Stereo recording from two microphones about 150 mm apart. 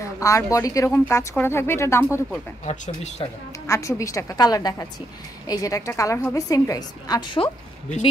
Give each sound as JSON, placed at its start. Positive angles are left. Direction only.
{"t": 0.0, "sound": "speech", "side_deg": 20}
{"t": 2.6, "sound": "speech", "side_deg": 50}
{"t": 3.6, "sound": "a woman's voice", "side_deg": 20}